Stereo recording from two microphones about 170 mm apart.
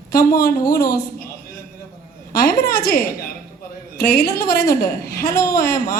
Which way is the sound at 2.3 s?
60° left (ahead or behind).